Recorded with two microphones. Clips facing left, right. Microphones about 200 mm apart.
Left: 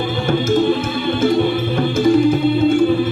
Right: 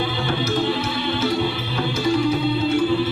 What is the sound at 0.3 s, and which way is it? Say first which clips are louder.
Music: left 8 dB; 50° left (ahead or behind).